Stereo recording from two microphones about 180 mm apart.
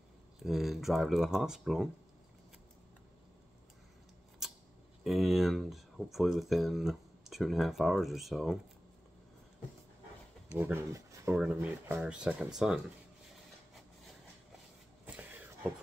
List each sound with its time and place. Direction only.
0.4 s speech: centre (ahead or behind)
4.4 s scissors: centre (ahead or behind)
5.0 s speech: centre (ahead or behind)
10.5 s speech: 10° right (ahead or behind)
11.4 s speech: 5° right (ahead or behind)